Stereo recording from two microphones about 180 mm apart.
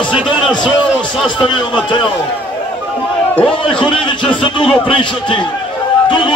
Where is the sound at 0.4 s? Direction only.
25° left (ahead or behind).